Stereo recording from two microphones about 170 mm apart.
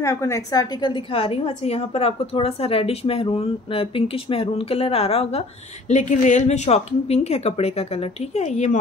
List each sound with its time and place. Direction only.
0.0 s a woman's voice: 15° left (ahead or behind); by 8.7 s 45° left (ahead or behind)